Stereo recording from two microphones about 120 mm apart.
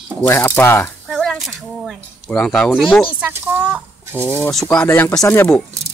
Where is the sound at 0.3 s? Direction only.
20° left (ahead or behind).